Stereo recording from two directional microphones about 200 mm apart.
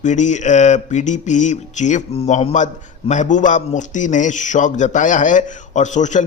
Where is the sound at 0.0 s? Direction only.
35° left (ahead or behind).